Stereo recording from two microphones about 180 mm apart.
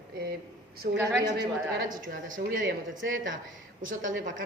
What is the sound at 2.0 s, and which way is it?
Speech, 55° right (ahead or behind).